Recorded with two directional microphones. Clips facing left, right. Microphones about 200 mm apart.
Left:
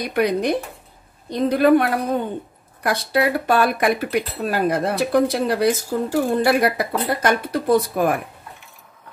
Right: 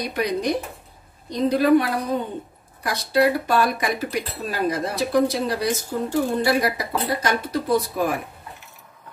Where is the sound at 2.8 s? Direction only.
55° left (ahead or behind).